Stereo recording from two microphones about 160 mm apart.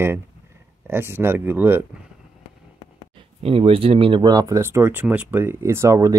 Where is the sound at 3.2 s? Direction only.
35° right (ahead or behind).